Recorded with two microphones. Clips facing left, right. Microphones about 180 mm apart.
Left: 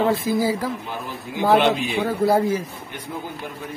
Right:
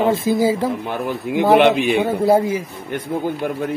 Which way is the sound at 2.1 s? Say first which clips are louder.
Left 1 dB; 20° right (ahead or behind).